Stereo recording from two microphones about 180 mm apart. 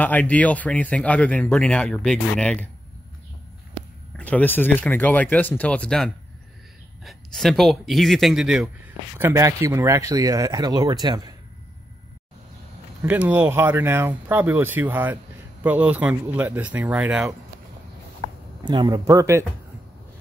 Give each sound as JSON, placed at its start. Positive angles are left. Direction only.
{"t": 0.0, "sound": "a man's voice", "side_deg": 10}
{"t": 4.2, "sound": "a man's voice", "side_deg": 10}
{"t": 13.0, "sound": "speech", "side_deg": -10}
{"t": 18.6, "sound": "speech", "side_deg": -25}